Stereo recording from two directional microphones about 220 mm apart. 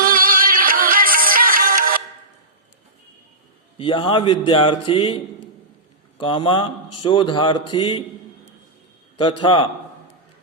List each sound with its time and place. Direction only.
0.0 s music: 40° right (ahead or behind)
3.8 s a man's voice: 25° left (ahead or behind)
9.4 s a man's voice: 20° left (ahead or behind)